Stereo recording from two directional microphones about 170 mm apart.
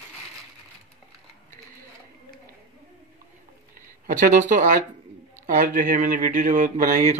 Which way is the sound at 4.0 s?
50° right (ahead or behind).